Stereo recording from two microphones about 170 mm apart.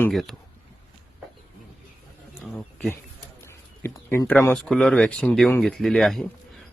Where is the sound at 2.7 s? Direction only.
5° left (ahead or behind).